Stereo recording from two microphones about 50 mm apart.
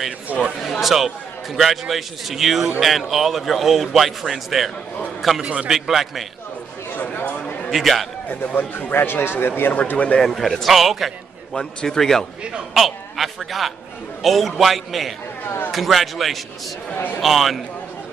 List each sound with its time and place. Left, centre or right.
0.3 s speech: right
0.7 s a man's voice: centre
5.4 s a man's voice: right
5.7 s a man's voice: centre
6.9 s a sound: left
7.7 s a man's voice: centre
8.3 s speech: left
9.8 s speech: left
10.1 s a man's voice: centre
11.5 s a man's voice: centre
12.7 s a man's voice: centre